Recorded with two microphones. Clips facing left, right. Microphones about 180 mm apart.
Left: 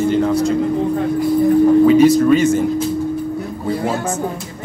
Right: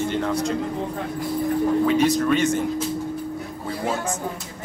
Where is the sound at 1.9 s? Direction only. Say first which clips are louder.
Left 9 dB; 5° left (ahead or behind).